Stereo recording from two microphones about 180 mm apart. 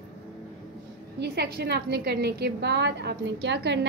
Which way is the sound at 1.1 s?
65° right (ahead or behind).